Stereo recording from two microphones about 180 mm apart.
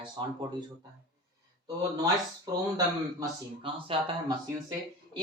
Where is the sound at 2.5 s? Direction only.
20° right (ahead or behind).